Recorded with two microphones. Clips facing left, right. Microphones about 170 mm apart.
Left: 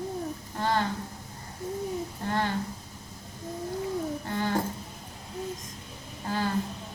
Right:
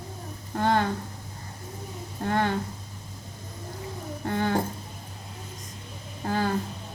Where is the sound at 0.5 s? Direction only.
50° right (ahead or behind).